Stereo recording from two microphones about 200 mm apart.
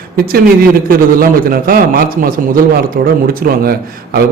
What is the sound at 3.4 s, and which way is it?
Speech, 50° right (ahead or behind).